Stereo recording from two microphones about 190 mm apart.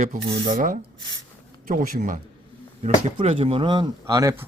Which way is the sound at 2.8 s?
35° right (ahead or behind).